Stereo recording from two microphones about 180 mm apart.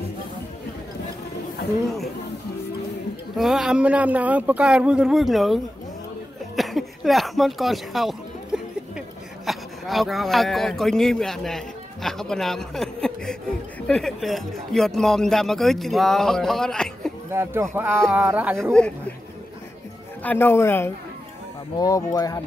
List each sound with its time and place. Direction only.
3.3 s speech: centre (ahead or behind)
8.5 s a sound: 5° right (ahead or behind)
9.5 s speech: centre (ahead or behind)
17.3 s speech: 15° right (ahead or behind)
18.6 s speech: 5° left (ahead or behind)
20.2 s a man's voice: 10° left (ahead or behind)